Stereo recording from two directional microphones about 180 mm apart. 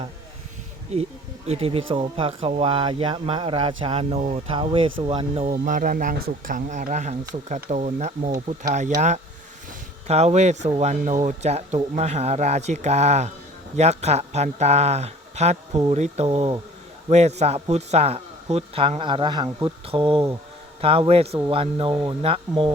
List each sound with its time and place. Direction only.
1.5 s speech: 35° right (ahead or behind)